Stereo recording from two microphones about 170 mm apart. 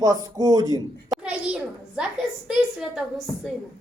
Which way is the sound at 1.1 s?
5° right (ahead or behind).